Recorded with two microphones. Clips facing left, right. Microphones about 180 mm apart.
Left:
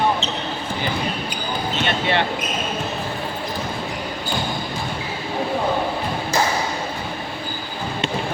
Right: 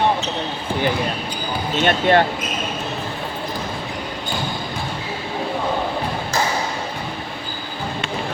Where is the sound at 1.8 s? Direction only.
45° right (ahead or behind).